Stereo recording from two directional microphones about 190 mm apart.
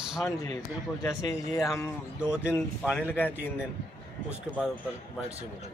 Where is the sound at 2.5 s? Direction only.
10° left (ahead or behind).